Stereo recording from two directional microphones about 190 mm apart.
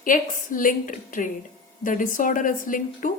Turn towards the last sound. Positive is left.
turn(degrees=45)  # may be behind; listen again after turning